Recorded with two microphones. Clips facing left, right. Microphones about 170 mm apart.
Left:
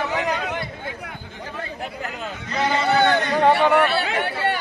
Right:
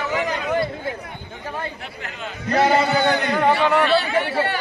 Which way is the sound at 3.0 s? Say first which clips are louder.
Left 1 dB; 65° left (ahead or behind).